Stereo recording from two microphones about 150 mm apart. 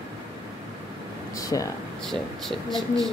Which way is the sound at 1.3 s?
25° left (ahead or behind).